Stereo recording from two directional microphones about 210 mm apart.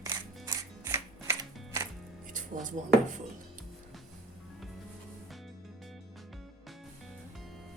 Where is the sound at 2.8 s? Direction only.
35° right (ahead or behind).